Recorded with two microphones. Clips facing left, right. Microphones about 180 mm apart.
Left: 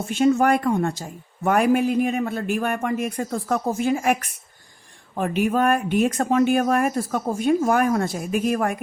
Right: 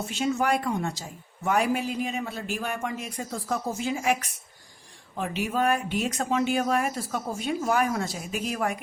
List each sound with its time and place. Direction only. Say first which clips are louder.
0.1 s a man's voice: left 8 dB; 55° left (ahead or behind)